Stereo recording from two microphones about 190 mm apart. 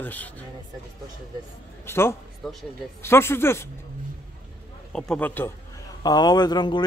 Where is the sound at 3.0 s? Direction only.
15° left (ahead or behind).